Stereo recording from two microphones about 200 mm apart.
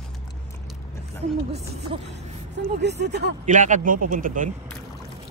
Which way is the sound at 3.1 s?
55° right (ahead or behind).